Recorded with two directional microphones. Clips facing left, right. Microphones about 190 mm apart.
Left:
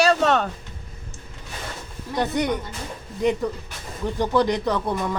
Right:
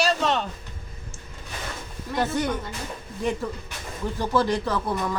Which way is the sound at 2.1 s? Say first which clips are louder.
Left 2 dB; 20° left (ahead or behind).